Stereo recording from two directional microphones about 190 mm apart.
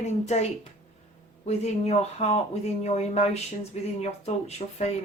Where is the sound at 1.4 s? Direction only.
35° left (ahead or behind).